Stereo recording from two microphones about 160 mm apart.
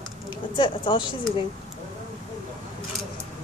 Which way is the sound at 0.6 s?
30° left (ahead or behind).